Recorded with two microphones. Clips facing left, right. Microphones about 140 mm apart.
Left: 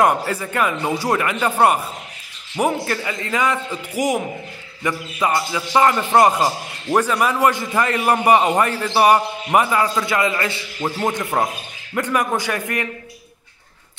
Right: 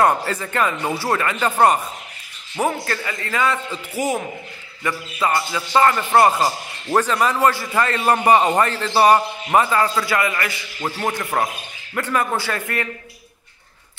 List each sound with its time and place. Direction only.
0.0 s a man's voice: 10° left (ahead or behind)